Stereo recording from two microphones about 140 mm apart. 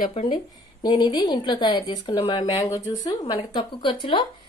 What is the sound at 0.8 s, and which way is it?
Speech, 30° left (ahead or behind).